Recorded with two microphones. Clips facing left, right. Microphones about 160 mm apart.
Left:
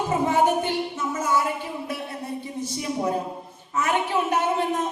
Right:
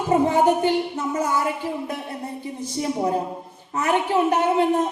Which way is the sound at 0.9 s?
35° right (ahead or behind).